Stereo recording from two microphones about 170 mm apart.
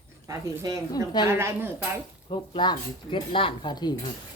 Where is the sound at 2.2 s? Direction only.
25° left (ahead or behind).